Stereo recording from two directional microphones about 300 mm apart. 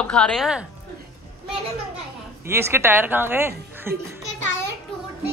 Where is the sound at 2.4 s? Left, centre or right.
Centre.